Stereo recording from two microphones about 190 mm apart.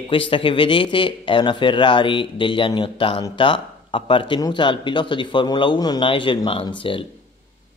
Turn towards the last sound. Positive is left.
turn(degrees=25)  # may be behind; listen again after turning